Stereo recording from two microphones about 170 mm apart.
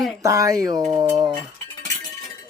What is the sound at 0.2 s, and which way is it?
Speech, 20° right (ahead or behind).